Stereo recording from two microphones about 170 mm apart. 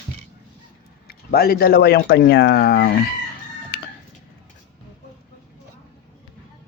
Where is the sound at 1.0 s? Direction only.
65° left (ahead or behind).